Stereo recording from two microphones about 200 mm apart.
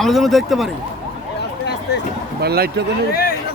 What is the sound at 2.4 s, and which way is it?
Speech, 55° right (ahead or behind).